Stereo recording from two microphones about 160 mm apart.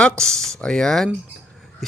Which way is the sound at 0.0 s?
5° left (ahead or behind).